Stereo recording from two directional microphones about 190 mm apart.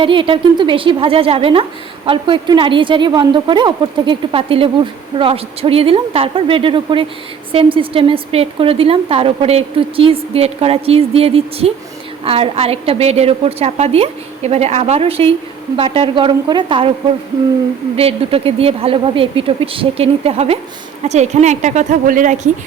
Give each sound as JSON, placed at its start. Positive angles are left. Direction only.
{"t": 0.0, "sound": "a woman's voice", "side_deg": -25}
{"t": 17.9, "sound": "a woman's voice", "side_deg": -30}